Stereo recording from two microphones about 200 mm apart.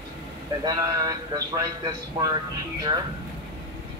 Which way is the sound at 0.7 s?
20° right (ahead or behind).